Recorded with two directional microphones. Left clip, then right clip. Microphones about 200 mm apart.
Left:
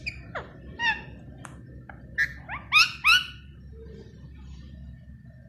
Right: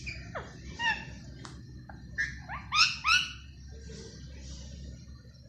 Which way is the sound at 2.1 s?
25° left (ahead or behind).